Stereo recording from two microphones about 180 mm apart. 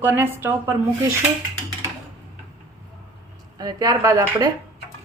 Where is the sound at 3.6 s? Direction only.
20° right (ahead or behind).